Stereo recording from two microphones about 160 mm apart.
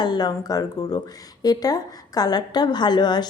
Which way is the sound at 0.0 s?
25° left (ahead or behind).